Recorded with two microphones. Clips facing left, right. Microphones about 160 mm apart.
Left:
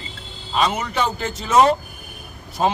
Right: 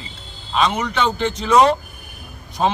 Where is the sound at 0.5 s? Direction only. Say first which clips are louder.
Right 1 dB; 5° left (ahead or behind).